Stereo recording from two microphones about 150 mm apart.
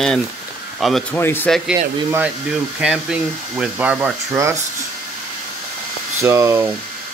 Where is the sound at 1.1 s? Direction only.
15° left (ahead or behind).